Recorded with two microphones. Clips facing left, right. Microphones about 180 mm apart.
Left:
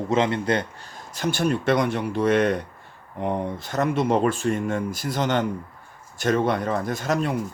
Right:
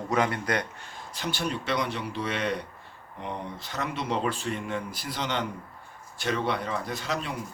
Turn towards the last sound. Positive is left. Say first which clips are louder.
# left 8 dB
turn(degrees=50)  # may be behind; listen again after turning